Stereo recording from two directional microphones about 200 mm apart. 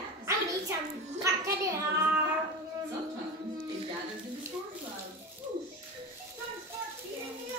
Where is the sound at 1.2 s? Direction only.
15° right (ahead or behind).